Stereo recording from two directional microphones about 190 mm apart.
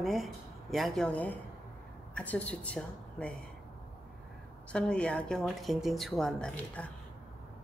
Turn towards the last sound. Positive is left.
turn(degrees=5)  # may be behind; listen again after turning